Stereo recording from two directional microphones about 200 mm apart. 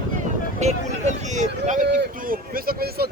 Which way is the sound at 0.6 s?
35° right (ahead or behind).